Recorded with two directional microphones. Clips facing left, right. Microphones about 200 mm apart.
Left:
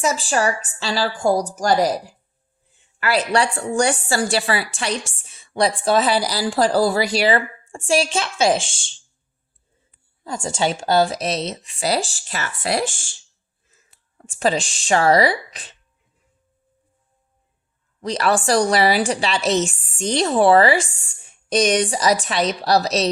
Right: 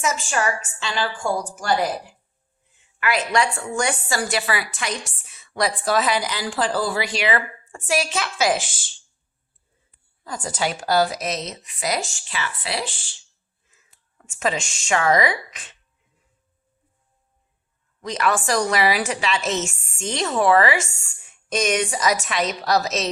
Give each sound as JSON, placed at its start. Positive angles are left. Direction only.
{"t": 0.0, "sound": "a woman's voice", "side_deg": 35}
{"t": 10.2, "sound": "a woman's voice", "side_deg": 25}
{"t": 14.2, "sound": "a woman's voice", "side_deg": 35}
{"t": 18.0, "sound": "a woman's voice", "side_deg": 35}